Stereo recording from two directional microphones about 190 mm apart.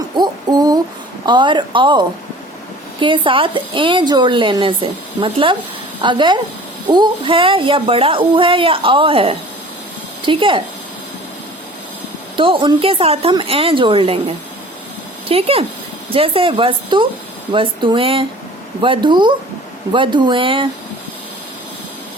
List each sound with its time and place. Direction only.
0.2 s a sound: 20° right (ahead or behind)
1.2 s a woman's voice: 25° right (ahead or behind)
12.4 s a woman's voice: 25° right (ahead or behind)